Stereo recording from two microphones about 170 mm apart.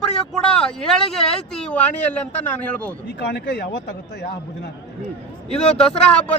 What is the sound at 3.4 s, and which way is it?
Speech, 75° left (ahead or behind).